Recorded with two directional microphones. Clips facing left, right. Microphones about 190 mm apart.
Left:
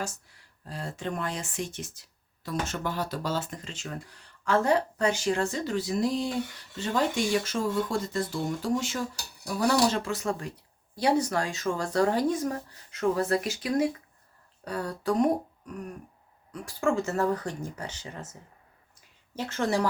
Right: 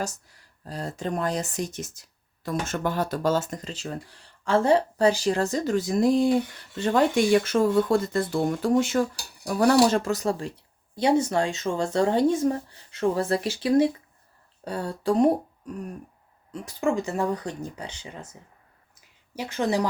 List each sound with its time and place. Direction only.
0.6 s speech: 40° right (ahead or behind)
10.9 s speech: 25° right (ahead or behind)
19.4 s speech: 15° right (ahead or behind)